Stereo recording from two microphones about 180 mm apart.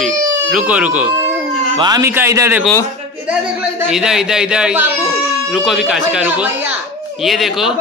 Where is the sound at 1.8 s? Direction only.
20° right (ahead or behind).